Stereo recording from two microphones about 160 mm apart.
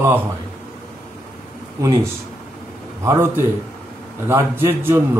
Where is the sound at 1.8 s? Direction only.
20° right (ahead or behind).